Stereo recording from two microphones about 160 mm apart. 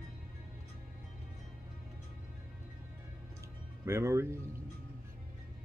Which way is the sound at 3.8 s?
15° right (ahead or behind).